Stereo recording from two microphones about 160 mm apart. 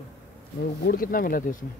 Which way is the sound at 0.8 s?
65° left (ahead or behind).